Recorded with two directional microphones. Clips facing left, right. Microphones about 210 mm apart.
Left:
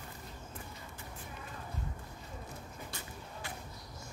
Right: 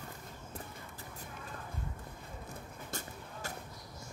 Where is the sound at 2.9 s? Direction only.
45° right (ahead or behind).